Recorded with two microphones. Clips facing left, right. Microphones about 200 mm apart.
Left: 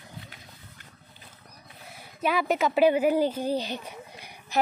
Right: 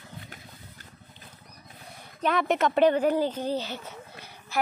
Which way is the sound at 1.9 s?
5° left (ahead or behind).